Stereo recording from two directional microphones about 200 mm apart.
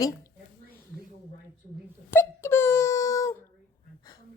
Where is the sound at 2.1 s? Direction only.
10° left (ahead or behind).